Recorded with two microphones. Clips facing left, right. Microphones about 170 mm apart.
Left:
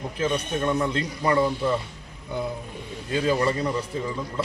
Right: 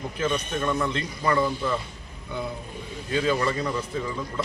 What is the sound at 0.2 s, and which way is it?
A man's voice, 10° left (ahead or behind).